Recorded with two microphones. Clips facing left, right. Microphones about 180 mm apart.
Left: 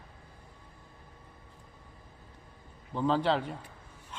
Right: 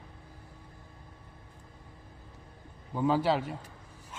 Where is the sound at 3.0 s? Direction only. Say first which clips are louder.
Right 1 dB; 10° right (ahead or behind).